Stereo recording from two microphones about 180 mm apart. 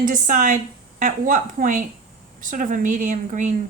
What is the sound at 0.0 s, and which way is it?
Speech, 50° right (ahead or behind).